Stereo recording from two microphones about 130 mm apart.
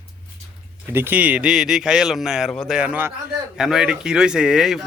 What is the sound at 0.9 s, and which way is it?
Speech, 15° right (ahead or behind).